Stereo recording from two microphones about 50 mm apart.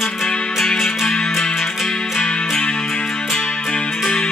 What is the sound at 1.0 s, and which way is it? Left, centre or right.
Music, centre.